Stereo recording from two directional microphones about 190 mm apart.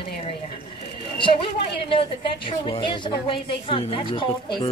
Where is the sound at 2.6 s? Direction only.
25° left (ahead or behind).